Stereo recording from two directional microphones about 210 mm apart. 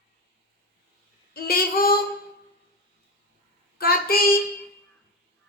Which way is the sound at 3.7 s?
45° left (ahead or behind).